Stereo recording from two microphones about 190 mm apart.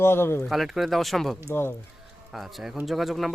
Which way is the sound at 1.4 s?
10° left (ahead or behind).